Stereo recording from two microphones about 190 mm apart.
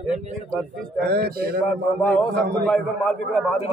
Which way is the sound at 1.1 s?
55° right (ahead or behind).